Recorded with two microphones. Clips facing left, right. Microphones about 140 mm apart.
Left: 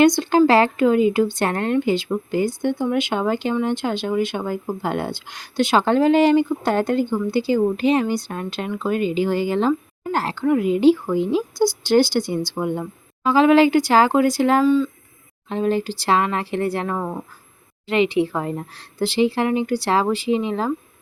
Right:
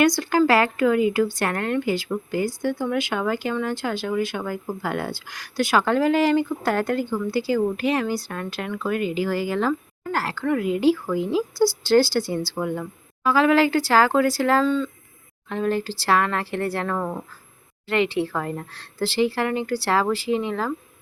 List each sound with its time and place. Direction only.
0.0 s speech: 25° left (ahead or behind)
15.4 s speech: 20° left (ahead or behind)